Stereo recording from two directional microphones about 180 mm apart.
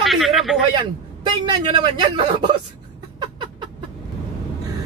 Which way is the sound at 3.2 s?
25° right (ahead or behind).